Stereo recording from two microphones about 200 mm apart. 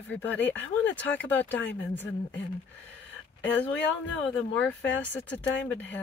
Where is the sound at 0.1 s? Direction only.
10° left (ahead or behind).